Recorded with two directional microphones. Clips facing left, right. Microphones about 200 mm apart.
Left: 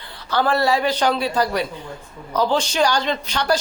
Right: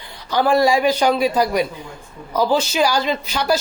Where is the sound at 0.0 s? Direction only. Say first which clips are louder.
Right 2 dB; 15° right (ahead or behind).